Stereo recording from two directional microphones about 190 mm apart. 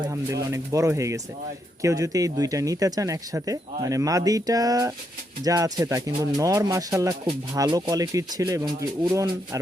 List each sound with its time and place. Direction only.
0.0 s speech: 20° right (ahead or behind)